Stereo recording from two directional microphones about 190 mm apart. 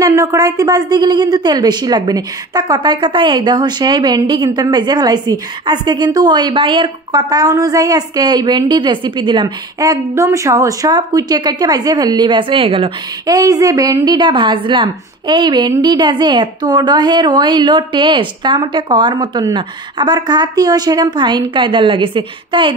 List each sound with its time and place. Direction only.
0.0 s a woman's voice: 15° right (ahead or behind)